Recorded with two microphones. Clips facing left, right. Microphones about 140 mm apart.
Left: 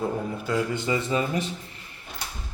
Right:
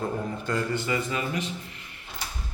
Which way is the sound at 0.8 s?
25° left (ahead or behind).